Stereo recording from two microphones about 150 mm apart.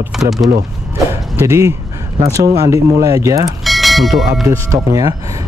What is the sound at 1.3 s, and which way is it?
Speech, 20° right (ahead or behind).